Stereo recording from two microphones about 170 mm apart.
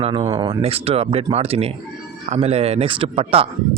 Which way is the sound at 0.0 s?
30° right (ahead or behind).